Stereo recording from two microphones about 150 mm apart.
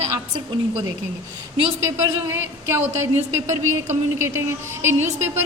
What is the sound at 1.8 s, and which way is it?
A woman's voice, 20° right (ahead or behind).